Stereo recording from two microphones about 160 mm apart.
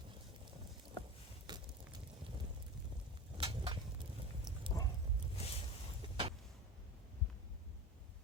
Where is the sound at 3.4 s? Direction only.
35° right (ahead or behind).